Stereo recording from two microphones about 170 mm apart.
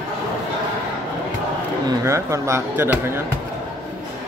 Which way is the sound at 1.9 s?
15° right (ahead or behind).